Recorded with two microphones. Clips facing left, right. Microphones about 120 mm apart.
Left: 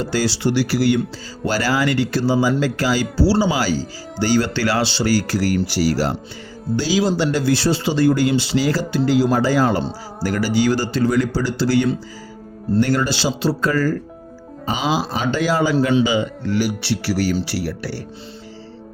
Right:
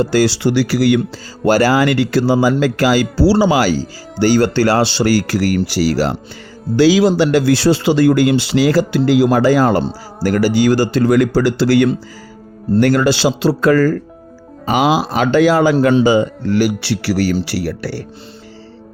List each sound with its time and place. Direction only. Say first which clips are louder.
0.0 s speech: right 6 dB; 60° right (ahead or behind); by 1.0 s 90° right
1.5 s speech: right 7 dB; 55° right (ahead or behind)
4.2 s speech: right 6 dB; 55° right (ahead or behind)
16.0 s a man's voice: right 6 dB; 45° right (ahead or behind)
16.6 s speech: right 5 dB; 90° right